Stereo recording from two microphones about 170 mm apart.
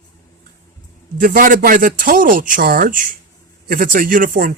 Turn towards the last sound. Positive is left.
turn(degrees=-55)  # may be behind; listen again after turning